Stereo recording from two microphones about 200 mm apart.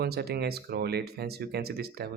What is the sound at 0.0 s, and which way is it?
Speech, 50° right (ahead or behind).